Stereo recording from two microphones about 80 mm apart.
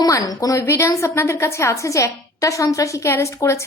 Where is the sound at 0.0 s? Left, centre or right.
Left.